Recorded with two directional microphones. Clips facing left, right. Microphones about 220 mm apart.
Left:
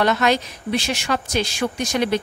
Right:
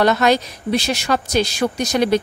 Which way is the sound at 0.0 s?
40° right (ahead or behind).